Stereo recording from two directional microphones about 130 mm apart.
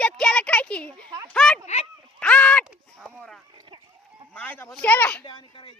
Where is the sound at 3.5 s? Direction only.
40° right (ahead or behind).